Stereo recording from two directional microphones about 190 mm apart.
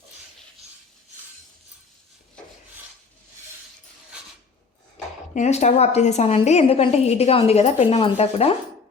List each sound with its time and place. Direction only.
5.3 s a woman's voice: 35° left (ahead or behind)